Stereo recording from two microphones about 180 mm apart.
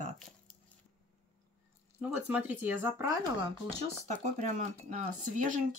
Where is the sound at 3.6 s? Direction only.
40° right (ahead or behind).